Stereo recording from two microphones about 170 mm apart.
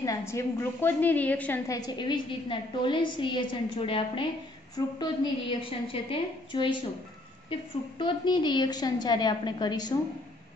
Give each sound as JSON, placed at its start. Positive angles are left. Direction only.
{"t": 0.0, "sound": "a woman's voice", "side_deg": 15}
{"t": 1.7, "sound": "a woman's voice", "side_deg": 25}
{"t": 8.0, "sound": "a woman's voice", "side_deg": 25}